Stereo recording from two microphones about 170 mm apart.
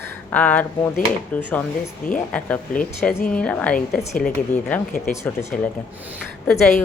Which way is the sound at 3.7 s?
55° left (ahead or behind).